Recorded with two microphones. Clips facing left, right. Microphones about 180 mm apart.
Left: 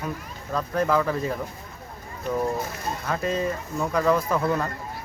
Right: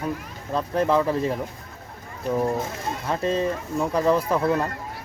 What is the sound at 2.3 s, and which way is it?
Speech, 25° right (ahead or behind).